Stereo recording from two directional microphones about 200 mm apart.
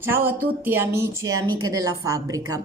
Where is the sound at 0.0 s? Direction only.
10° right (ahead or behind).